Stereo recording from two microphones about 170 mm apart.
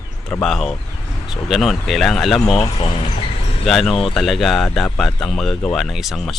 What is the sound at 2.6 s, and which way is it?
Speech, 30° left (ahead or behind).